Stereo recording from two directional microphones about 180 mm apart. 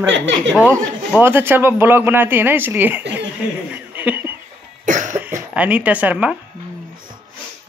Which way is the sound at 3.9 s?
10° right (ahead or behind).